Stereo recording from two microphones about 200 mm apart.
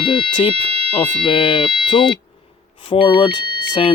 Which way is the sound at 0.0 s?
25° left (ahead or behind).